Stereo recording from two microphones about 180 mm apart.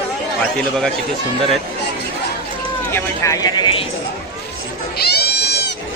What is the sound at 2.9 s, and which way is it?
Speech, 15° left (ahead or behind).